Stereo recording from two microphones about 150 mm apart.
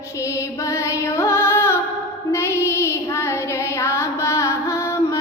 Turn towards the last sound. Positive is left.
turn(degrees=20)  # may be behind; listen again after turning